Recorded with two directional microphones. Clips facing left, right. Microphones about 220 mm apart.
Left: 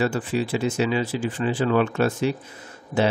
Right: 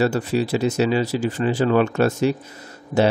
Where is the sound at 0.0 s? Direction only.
40° right (ahead or behind).